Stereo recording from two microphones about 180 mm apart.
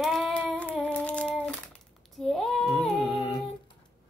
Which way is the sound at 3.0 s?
30° left (ahead or behind).